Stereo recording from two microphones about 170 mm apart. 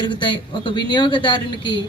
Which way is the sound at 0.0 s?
25° left (ahead or behind).